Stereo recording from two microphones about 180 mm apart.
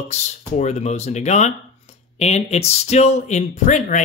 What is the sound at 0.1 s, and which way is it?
Speech, 40° left (ahead or behind).